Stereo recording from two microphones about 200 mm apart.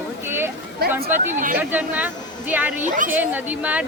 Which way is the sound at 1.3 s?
40° right (ahead or behind).